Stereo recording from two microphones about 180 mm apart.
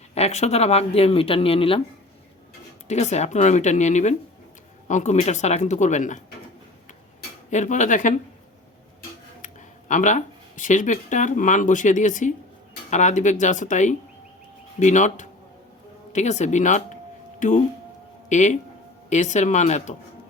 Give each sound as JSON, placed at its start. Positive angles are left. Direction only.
{"t": 0.1, "sound": "speech", "side_deg": 35}
{"t": 2.8, "sound": "speech", "side_deg": 40}
{"t": 7.5, "sound": "speech", "side_deg": 40}
{"t": 9.9, "sound": "speech", "side_deg": 45}
{"t": 18.3, "sound": "speech", "side_deg": 40}